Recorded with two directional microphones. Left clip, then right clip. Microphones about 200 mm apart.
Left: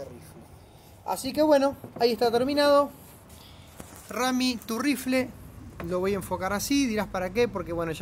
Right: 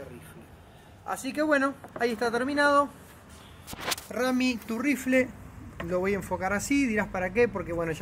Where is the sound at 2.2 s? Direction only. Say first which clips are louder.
Even; centre (ahead or behind).